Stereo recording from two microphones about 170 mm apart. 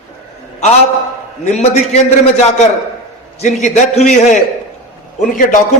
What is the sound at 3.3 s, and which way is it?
A man's voice, 45° left (ahead or behind).